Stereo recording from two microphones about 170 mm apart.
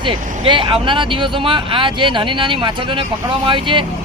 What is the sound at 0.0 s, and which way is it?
Speech, 30° right (ahead or behind).